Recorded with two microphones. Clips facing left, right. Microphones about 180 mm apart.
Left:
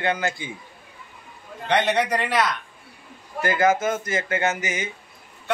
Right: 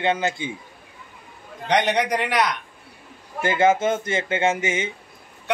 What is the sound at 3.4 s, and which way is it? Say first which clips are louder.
Speech: right 2 dB; 25° right (ahead or behind).